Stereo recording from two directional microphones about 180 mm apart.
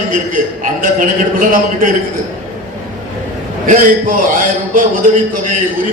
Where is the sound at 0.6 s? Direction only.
50° right (ahead or behind).